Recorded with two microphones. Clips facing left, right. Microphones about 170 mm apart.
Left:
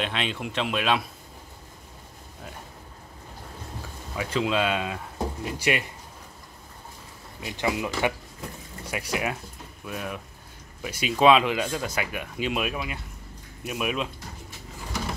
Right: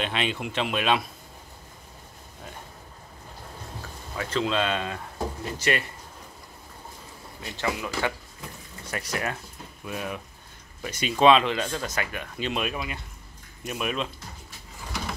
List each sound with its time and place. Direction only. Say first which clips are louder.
0.0 s speech: right 1 dB; centre (ahead or behind)
4.2 s speech: left 1 dB; 10° left (ahead or behind)
7.3 s speech: left 3 dB; 15° left (ahead or behind)